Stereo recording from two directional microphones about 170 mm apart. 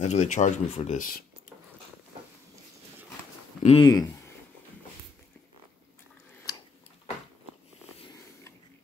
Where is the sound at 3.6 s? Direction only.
35° left (ahead or behind).